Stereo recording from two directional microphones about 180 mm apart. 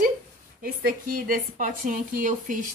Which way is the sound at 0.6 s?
50° right (ahead or behind).